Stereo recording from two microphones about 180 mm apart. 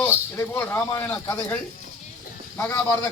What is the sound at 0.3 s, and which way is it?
Speech, 10° left (ahead or behind).